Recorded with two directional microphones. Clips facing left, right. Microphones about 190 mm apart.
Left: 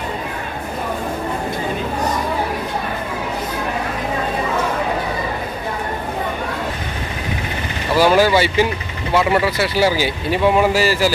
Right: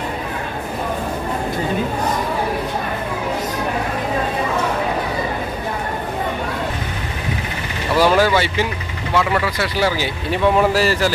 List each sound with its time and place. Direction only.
7.9 s speech: 5° left (ahead or behind); by 9.7 s 25° left (ahead or behind)
9.8 s speech: 10° left (ahead or behind)